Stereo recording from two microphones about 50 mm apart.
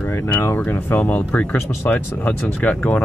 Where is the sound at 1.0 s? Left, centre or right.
Left.